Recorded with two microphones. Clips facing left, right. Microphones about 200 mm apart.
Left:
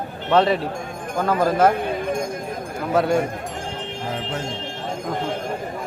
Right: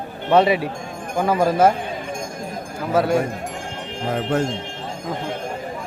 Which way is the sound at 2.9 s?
Centre (ahead or behind).